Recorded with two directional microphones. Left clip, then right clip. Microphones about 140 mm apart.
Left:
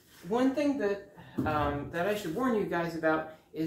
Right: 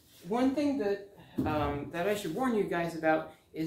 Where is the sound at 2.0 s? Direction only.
20° right (ahead or behind).